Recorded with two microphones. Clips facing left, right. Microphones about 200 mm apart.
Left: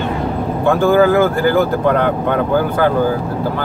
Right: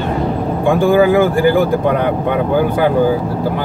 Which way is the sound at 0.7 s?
15° right (ahead or behind).